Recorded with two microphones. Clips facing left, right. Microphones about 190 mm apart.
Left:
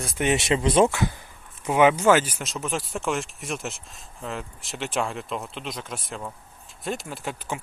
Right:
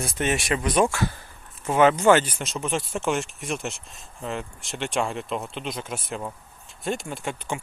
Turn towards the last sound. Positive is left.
turn(degrees=5)  # may be behind; listen again after turning